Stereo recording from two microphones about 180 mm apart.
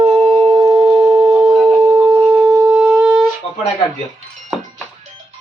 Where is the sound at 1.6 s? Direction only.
15° right (ahead or behind).